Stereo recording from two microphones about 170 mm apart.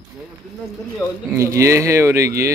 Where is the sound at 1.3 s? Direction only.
15° right (ahead or behind).